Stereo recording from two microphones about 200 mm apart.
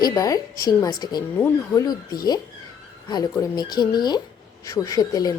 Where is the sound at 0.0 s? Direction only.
15° left (ahead or behind).